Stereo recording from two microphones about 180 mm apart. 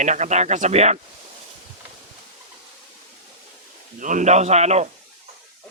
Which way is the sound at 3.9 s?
45° right (ahead or behind).